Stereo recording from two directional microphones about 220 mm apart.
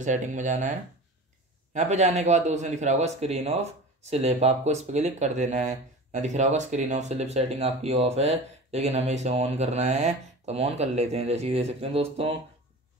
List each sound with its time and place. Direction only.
0.0 s a man's voice: 35° right (ahead or behind)